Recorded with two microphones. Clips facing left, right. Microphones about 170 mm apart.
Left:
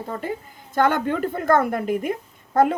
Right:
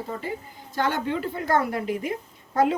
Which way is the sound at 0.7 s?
50° left (ahead or behind).